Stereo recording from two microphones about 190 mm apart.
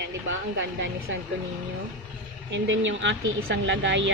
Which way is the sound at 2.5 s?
85° right.